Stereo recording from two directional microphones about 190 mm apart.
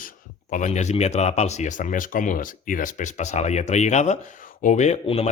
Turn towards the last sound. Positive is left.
turn(degrees=35)  # may be behind; listen again after turning